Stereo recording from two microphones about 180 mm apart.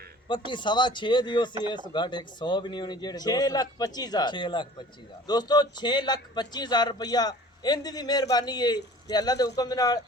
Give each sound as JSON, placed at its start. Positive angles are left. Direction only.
{"t": 0.3, "sound": "a man's voice", "side_deg": 25}